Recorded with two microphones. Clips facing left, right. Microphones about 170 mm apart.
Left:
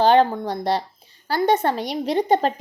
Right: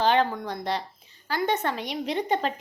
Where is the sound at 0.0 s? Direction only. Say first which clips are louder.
Left 7 dB; 35° left (ahead or behind).